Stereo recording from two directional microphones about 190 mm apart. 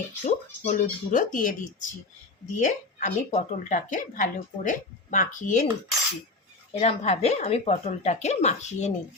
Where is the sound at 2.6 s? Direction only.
40° left (ahead or behind).